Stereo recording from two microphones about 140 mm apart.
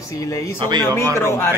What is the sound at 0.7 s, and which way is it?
Speech, 30° right (ahead or behind).